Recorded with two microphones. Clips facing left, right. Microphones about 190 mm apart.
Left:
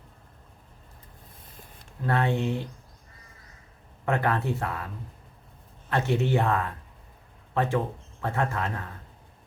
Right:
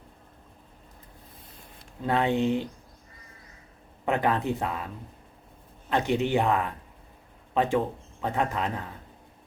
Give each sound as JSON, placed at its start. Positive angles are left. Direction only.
{"t": 2.0, "sound": "speech", "side_deg": -15}
{"t": 4.0, "sound": "speech", "side_deg": -15}
{"t": 5.9, "sound": "speech", "side_deg": -15}